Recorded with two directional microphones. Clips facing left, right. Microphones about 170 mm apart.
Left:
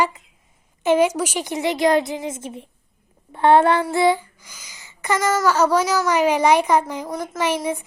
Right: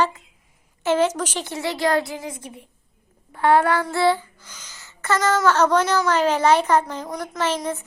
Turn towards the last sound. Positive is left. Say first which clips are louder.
# left 2 dB
turn(degrees=15)  # may be behind; listen again after turning